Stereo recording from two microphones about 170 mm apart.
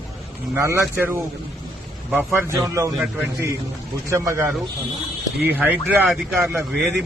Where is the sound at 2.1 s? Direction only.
Centre (ahead or behind).